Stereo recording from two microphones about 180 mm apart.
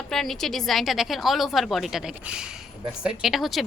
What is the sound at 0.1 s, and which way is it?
A woman's voice, centre (ahead or behind).